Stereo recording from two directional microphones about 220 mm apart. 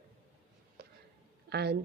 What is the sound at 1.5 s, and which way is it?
Speech, 50° right (ahead or behind).